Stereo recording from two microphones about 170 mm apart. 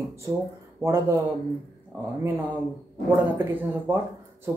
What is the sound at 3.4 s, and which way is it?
Speech, 10° right (ahead or behind).